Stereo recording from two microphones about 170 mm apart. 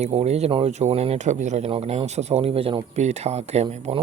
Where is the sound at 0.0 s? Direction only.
35° right (ahead or behind).